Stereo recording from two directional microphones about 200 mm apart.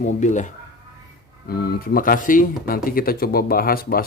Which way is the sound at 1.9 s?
45° left (ahead or behind).